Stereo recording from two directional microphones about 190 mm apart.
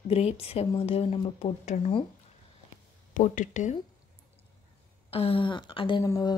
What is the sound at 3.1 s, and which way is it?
Speech, 45° left (ahead or behind).